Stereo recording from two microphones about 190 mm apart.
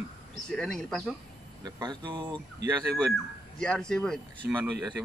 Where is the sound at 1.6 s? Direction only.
25° right (ahead or behind).